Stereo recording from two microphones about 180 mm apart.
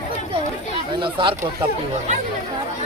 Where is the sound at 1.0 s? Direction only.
25° right (ahead or behind).